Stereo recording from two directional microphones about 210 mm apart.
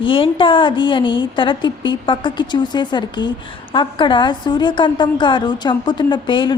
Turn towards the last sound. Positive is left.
turn(degrees=20)  # may be behind; listen again after turning